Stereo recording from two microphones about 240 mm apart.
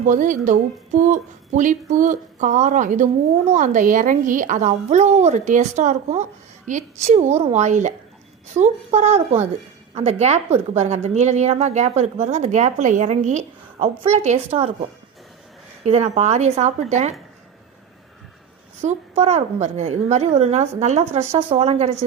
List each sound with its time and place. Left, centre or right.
0.1 s a woman's voice: right
15.8 s a woman's voice: right
18.8 s a woman's voice: right